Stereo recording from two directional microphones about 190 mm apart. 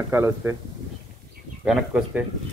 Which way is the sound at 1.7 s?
5° right (ahead or behind).